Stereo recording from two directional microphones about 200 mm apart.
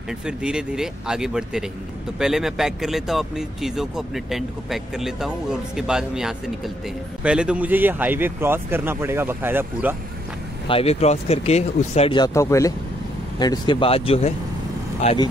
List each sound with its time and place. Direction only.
0.4 s speech: 5° right (ahead or behind)
10.7 s speech: 30° left (ahead or behind)